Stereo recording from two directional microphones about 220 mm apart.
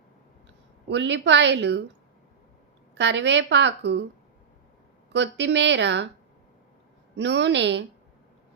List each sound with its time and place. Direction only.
0.9 s a woman's voice: 55° right (ahead or behind)
2.9 s a woman's voice: 55° right (ahead or behind)
5.1 s a woman's voice: 55° right (ahead or behind)
7.2 s a woman's voice: 55° right (ahead or behind)